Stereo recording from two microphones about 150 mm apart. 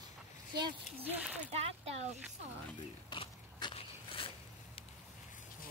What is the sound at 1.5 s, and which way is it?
Speech, 45° right (ahead or behind).